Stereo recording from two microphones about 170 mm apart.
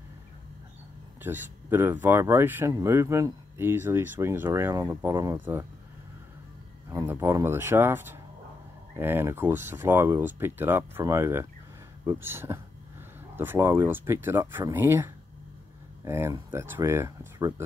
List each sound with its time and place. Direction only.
1.2 s speech: 10° right (ahead or behind)
6.9 s speech: 15° right (ahead or behind)